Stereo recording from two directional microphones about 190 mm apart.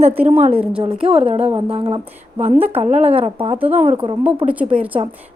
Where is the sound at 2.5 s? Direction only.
10° right (ahead or behind).